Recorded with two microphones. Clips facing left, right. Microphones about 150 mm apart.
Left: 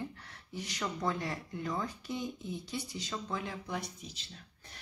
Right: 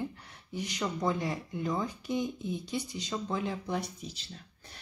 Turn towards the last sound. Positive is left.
turn(degrees=-35)  # may be behind; listen again after turning